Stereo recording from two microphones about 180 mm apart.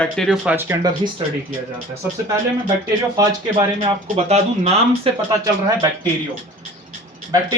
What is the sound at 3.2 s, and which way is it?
Speech, 20° right (ahead or behind).